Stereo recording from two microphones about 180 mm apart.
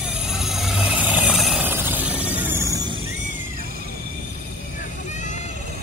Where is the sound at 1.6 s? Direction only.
10° right (ahead or behind).